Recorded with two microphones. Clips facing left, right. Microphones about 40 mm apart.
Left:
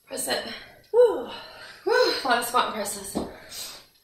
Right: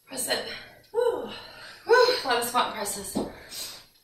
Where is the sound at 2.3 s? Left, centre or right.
Centre.